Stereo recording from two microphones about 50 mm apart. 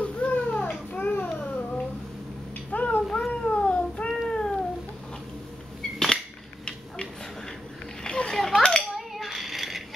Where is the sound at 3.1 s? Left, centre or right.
Centre.